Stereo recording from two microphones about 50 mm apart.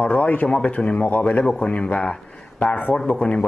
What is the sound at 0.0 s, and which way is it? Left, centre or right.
Speech, left.